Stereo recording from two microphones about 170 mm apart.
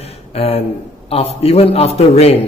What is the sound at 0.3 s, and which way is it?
A man's voice, 35° left (ahead or behind).